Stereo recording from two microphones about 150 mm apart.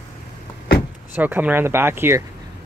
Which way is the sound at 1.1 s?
10° right (ahead or behind).